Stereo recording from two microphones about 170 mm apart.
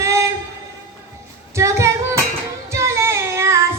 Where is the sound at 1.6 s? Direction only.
15° right (ahead or behind).